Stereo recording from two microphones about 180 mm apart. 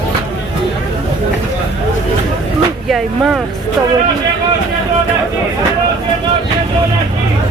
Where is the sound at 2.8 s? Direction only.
Centre (ahead or behind).